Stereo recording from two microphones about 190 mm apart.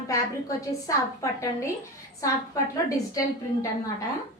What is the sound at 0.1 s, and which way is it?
A woman's voice, 15° left (ahead or behind).